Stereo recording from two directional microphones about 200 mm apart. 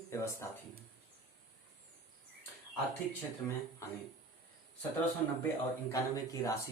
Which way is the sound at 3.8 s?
15° left (ahead or behind).